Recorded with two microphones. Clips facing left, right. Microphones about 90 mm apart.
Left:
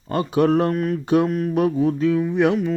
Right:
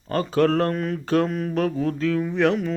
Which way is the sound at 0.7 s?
5° left (ahead or behind).